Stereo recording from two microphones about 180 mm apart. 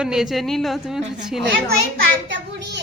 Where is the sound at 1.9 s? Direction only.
75° right (ahead or behind).